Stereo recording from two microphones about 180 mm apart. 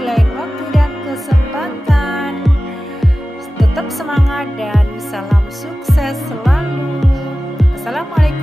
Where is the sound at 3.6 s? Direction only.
Centre (ahead or behind).